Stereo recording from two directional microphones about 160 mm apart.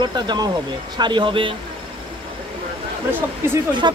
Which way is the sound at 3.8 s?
25° right (ahead or behind).